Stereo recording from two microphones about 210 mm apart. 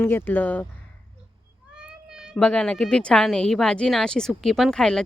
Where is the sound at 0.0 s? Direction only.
10° left (ahead or behind).